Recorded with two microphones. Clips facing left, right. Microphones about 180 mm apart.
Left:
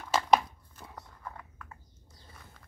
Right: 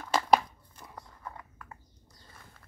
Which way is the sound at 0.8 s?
Centre (ahead or behind).